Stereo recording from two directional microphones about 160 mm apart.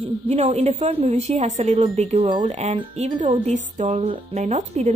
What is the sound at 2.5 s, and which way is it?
Speech, 45° right (ahead or behind).